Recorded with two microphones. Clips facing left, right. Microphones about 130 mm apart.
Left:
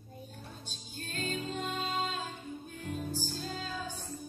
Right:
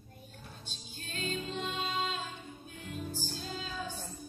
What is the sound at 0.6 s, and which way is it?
Music, 45° left (ahead or behind).